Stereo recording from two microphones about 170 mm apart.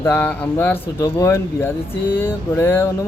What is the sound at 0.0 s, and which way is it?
Speech, 10° left (ahead or behind).